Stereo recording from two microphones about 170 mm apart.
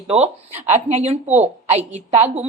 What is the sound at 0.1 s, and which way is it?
A woman's voice, 40° right (ahead or behind).